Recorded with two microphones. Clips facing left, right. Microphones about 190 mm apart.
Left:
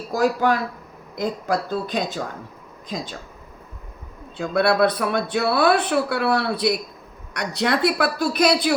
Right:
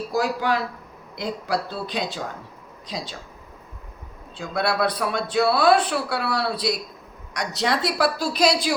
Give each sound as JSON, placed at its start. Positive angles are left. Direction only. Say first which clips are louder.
{"t": 0.1, "sound": "a man's voice", "louder": "left 4 dB", "side_deg": 45}
{"t": 4.4, "sound": "speech", "louder": "left 6 dB", "side_deg": 60}